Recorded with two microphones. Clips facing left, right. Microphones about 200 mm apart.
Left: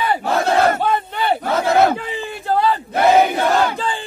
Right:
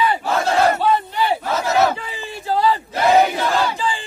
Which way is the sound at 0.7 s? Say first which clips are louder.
Right 1 dB; 55° left (ahead or behind).